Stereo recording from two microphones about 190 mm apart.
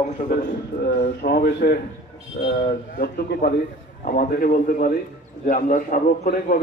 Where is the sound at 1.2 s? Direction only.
55° left (ahead or behind).